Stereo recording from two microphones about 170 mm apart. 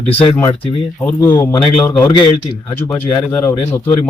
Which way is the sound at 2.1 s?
25° left (ahead or behind).